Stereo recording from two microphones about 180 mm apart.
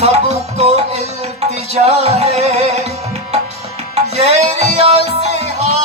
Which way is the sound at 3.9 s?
35° right (ahead or behind).